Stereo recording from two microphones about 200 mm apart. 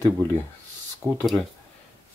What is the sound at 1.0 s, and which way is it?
Speech, centre (ahead or behind).